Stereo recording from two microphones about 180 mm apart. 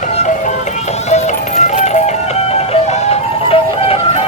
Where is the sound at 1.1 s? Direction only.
40° left (ahead or behind).